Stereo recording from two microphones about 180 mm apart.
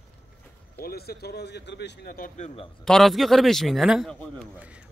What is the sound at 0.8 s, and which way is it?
Speech, 60° left (ahead or behind).